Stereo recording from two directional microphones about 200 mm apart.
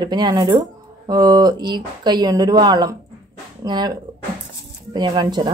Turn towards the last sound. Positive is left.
turn(degrees=-20)  # may be behind; listen again after turning